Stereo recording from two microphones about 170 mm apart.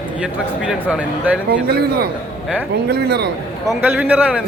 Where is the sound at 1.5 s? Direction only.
70° right (ahead or behind).